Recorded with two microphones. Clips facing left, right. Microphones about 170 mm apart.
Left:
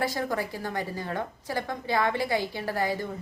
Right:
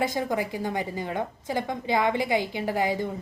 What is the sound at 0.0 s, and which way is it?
A woman's voice, 20° right (ahead or behind).